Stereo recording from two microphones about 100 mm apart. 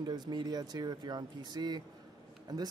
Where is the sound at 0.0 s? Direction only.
45° right (ahead or behind).